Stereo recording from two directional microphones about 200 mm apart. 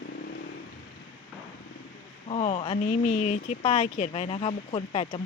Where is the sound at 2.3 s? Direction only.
30° left (ahead or behind).